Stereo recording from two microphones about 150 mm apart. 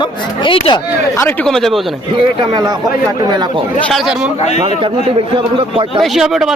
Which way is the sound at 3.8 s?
Centre (ahead or behind).